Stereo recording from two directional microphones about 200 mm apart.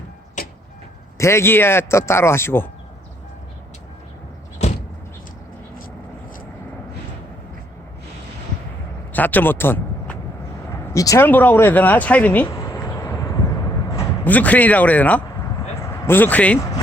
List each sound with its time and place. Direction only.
1.2 s speech: 15° left (ahead or behind)
4.6 s vehicle: 35° left (ahead or behind)
9.1 s a man's voice: 10° left (ahead or behind)
12.5 s a sound: 15° left (ahead or behind)
13.9 s speech: 10° left (ahead or behind)